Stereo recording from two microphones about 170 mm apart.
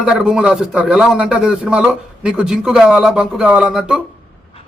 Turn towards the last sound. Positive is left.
turn(degrees=-5)  # may be behind; listen again after turning